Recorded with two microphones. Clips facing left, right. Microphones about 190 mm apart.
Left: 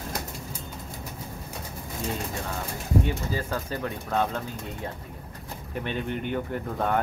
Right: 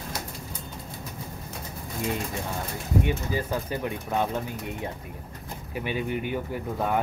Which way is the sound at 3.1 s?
15° right (ahead or behind).